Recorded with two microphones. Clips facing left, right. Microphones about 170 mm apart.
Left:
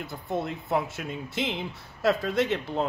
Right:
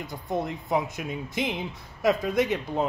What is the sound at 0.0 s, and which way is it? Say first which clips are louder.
Speech: right 1 dB; 15° right (ahead or behind).